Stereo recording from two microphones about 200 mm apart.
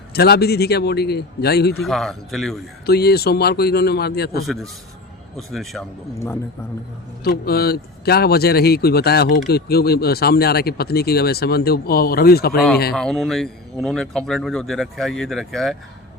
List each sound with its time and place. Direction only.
0.1 s speech: 55° left (ahead or behind)
1.8 s speech: centre (ahead or behind)
2.8 s speech: 50° left (ahead or behind)
5.4 s speech: centre (ahead or behind)
7.3 s speech: 50° left (ahead or behind)
12.9 s speech: centre (ahead or behind)